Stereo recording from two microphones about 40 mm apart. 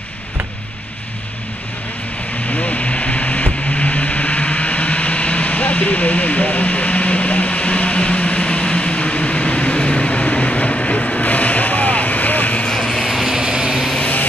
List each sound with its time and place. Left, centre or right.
2.5 s a sound: left
12.5 s vehicle: left
13.1 s ratchet: centre
13.4 s vehicle: centre